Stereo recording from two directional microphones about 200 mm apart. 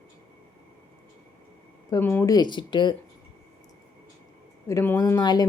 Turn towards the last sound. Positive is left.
turn(degrees=20)  # may be behind; listen again after turning